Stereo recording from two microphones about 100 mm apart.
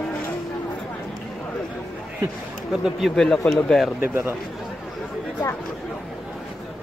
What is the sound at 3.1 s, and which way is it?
Speech, 5° left (ahead or behind).